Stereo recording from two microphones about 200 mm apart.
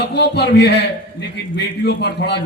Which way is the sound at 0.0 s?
55° left (ahead or behind).